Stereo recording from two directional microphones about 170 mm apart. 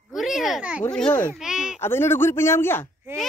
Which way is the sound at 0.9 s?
10° left (ahead or behind).